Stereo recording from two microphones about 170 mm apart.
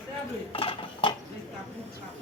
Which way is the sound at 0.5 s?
30° left (ahead or behind).